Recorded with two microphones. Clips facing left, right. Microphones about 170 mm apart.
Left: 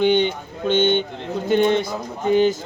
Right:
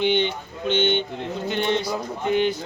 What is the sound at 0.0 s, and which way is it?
A man's voice, 45° left (ahead or behind).